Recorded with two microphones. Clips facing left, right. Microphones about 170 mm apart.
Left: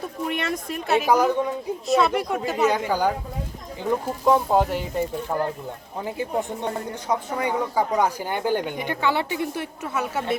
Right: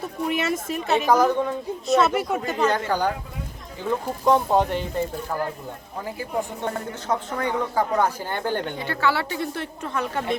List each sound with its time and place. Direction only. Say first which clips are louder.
0.0 s a woman's voice: right 2 dB; 5° right (ahead or behind)
1.9 s a woman's voice: right 1 dB; centre (ahead or behind)
2.5 s a woman's voice: left 2 dB; 10° left (ahead or behind)
4.3 s a woman's voice: even; 5° left (ahead or behind)
5.3 s speech: left 2 dB; 20° left (ahead or behind)
7.1 s a woman's voice: left 1 dB; 10° left (ahead or behind)